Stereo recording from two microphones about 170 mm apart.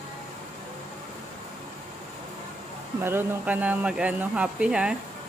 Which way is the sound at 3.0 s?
10° right (ahead or behind).